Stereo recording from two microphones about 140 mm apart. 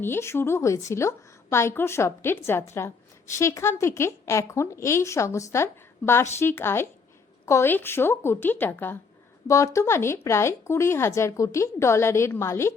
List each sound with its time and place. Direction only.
0.0 s a woman's voice: 15° left (ahead or behind)